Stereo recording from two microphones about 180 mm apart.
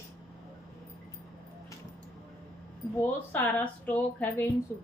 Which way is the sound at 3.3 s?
10° left (ahead or behind).